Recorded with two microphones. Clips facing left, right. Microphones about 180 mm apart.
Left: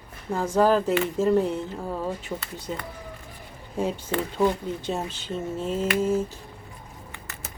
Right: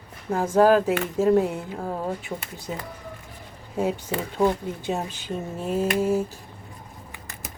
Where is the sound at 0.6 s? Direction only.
10° right (ahead or behind).